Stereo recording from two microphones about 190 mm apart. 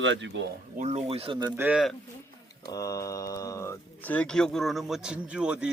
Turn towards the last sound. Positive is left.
turn(degrees=-5)  # may be behind; listen again after turning